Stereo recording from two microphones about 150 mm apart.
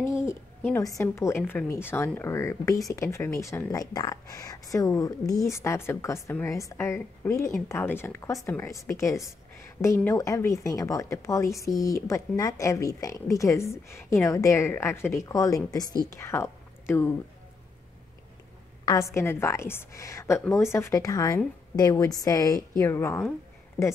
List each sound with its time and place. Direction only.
0.2 s a woman's voice: 15° left (ahead or behind)
18.9 s a woman's voice: 20° left (ahead or behind)